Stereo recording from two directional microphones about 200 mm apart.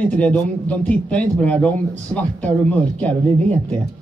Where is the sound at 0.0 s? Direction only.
5° left (ahead or behind).